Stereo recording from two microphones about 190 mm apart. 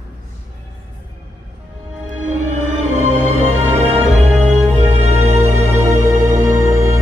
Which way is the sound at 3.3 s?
35° right (ahead or behind).